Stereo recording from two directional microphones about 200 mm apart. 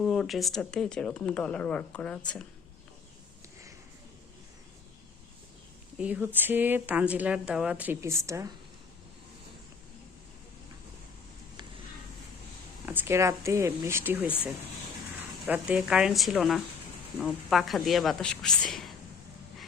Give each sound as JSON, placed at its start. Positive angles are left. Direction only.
{"t": 0.0, "sound": "speech", "side_deg": 0}
{"t": 6.0, "sound": "speech", "side_deg": -5}
{"t": 12.8, "sound": "speech", "side_deg": -10}
{"t": 15.4, "sound": "speech", "side_deg": -5}